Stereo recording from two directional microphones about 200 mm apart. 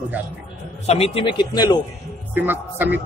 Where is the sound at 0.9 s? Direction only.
30° left (ahead or behind).